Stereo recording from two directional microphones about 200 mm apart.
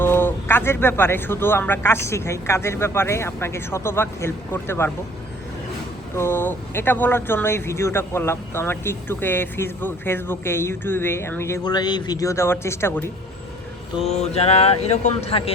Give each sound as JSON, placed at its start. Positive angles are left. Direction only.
{"t": 0.0, "sound": "speech", "side_deg": 10}
{"t": 6.1, "sound": "speech", "side_deg": 10}
{"t": 14.0, "sound": "a sound", "side_deg": 30}